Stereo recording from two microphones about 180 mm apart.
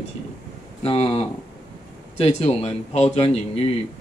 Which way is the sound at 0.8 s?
30° left (ahead or behind).